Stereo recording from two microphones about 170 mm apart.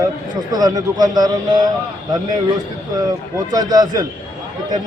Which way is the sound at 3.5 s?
25° right (ahead or behind).